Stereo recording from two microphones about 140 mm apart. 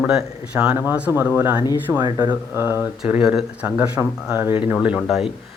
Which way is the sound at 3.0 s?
5° right (ahead or behind).